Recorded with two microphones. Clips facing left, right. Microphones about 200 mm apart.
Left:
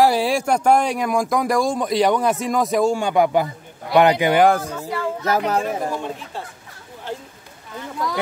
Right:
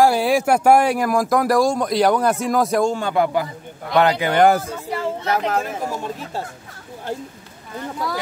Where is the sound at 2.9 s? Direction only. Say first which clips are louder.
Left 2 dB; 15° left (ahead or behind).